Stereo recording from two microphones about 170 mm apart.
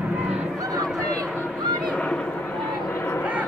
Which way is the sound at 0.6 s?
20° right (ahead or behind).